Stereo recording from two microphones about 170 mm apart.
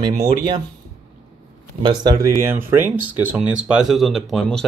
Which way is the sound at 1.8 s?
20° right (ahead or behind).